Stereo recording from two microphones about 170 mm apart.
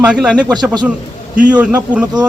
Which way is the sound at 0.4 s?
25° right (ahead or behind).